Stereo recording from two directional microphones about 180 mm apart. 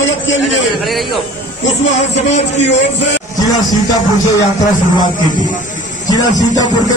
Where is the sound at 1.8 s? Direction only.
80° left.